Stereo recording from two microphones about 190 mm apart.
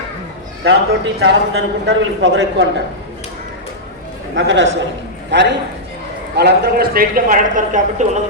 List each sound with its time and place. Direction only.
0.6 s a man's voice: 75° right (ahead or behind)
4.4 s a man's voice: 75° right (ahead or behind)
5.3 s a man's voice: 65° right (ahead or behind); by 8.2 s 40° right (ahead or behind)